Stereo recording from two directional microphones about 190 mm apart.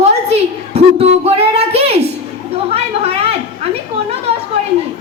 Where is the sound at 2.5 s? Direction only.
30° right (ahead or behind).